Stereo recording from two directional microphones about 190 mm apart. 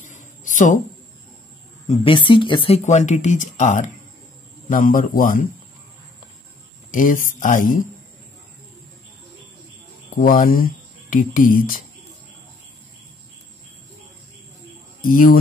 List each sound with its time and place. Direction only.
0.0 s a sound: 40° left (ahead or behind)
1.9 s speech: 25° left (ahead or behind); by 5.5 s 45° left (ahead or behind)
6.9 s speech: 45° left (ahead or behind)
10.1 s speech: 45° left (ahead or behind)
15.0 s speech: 45° left (ahead or behind)